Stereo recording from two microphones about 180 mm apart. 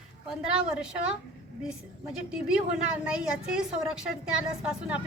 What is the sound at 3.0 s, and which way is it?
A woman's voice, 5° right (ahead or behind).